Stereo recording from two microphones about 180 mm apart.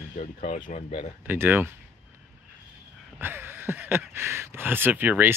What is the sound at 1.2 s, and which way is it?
Speech, 10° right (ahead or behind).